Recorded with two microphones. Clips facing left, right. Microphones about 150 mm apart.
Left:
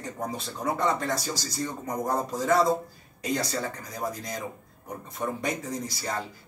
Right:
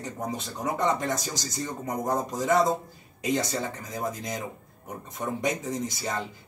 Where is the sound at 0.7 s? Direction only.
20° right (ahead or behind).